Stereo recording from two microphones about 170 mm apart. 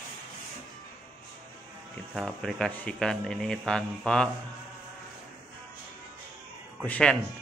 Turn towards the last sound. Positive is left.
turn(degrees=5)  # may be behind; listen again after turning